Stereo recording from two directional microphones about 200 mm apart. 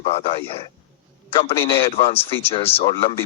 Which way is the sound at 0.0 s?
30° left (ahead or behind).